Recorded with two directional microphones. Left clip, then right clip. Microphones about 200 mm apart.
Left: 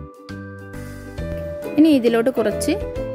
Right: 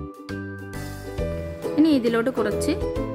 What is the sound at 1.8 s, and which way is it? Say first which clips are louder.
Speech: left 5 dB; 15° left (ahead or behind).